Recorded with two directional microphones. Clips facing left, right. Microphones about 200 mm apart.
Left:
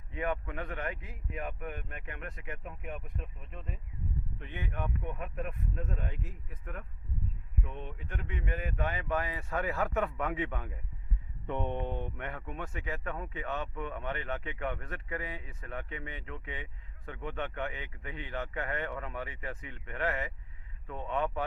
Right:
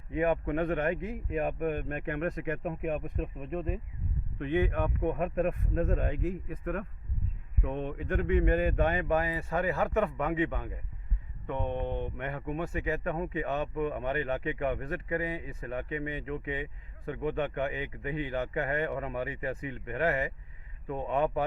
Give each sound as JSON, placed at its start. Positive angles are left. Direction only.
{"t": 0.1, "sound": "speech", "side_deg": -15}
{"t": 0.4, "sound": "a man's voice", "side_deg": -55}
{"t": 4.4, "sound": "speech", "side_deg": -90}
{"t": 9.0, "sound": "a man's voice", "side_deg": -15}
{"t": 11.8, "sound": "mantra", "side_deg": -20}
{"t": 12.1, "sound": "a man's voice", "side_deg": -5}